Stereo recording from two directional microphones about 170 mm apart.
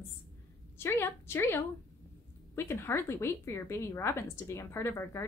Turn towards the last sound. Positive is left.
turn(degrees=15)  # may be behind; listen again after turning